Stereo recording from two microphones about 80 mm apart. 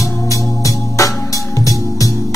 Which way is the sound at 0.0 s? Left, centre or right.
Left.